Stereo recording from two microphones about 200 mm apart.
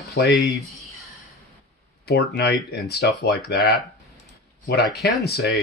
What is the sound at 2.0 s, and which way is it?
Speech, 55° left (ahead or behind).